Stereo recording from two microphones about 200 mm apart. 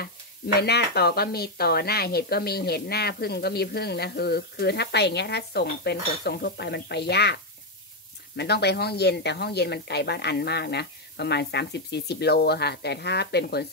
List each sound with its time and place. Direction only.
0.6 s speech: 55° left (ahead or behind)
8.4 s a woman's voice: 55° left (ahead or behind)